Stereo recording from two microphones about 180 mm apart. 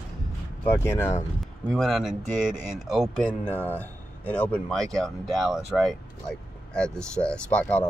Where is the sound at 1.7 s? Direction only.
Centre (ahead or behind).